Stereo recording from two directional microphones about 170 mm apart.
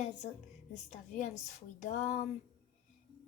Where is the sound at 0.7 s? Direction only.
45° left (ahead or behind).